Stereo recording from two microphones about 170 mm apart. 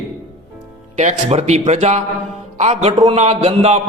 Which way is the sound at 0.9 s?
40° right (ahead or behind).